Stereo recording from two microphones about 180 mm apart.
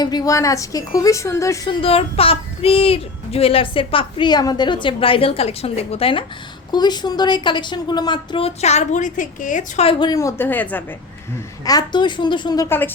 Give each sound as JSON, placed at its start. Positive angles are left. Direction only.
{"t": 0.0, "sound": "a woman's voice", "side_deg": 20}
{"t": 1.8, "sound": "a child's voice", "side_deg": 30}
{"t": 9.8, "sound": "a woman's voice", "side_deg": 25}
{"t": 11.6, "sound": "a woman's voice", "side_deg": 20}